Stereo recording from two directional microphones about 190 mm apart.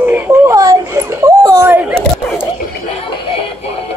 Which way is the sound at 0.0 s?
10° right (ahead or behind).